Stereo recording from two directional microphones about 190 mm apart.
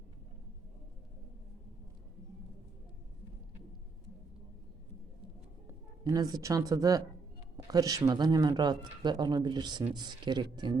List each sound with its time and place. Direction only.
5.6 s speech: 20° right (ahead or behind)